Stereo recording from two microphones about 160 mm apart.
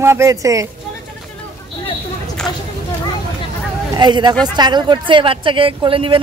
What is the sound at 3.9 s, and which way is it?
Speech, 25° right (ahead or behind).